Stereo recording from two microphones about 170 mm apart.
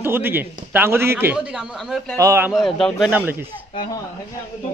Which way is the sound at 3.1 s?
10° right (ahead or behind).